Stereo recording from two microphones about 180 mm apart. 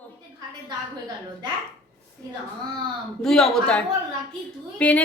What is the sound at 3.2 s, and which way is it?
A woman's voice, 5° left (ahead or behind).